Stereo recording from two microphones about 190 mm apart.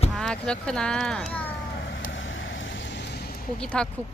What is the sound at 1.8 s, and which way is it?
Vehicle, 75° left (ahead or behind).